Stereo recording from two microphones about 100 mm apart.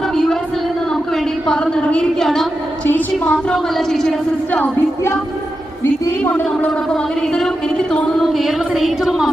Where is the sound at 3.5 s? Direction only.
5° left (ahead or behind).